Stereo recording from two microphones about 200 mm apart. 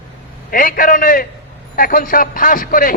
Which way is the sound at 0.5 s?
45° left (ahead or behind).